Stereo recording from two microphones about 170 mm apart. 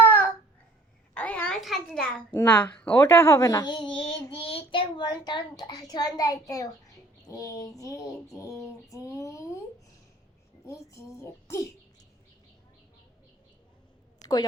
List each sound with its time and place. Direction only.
0.0 s babbling: 10° left (ahead or behind)
1.1 s a child's voice: 10° left (ahead or behind)
10.7 s a child's voice: 15° left (ahead or behind)
14.2 s a sound: 20° left (ahead or behind)